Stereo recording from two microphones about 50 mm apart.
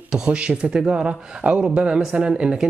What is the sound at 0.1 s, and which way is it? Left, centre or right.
Speech, centre.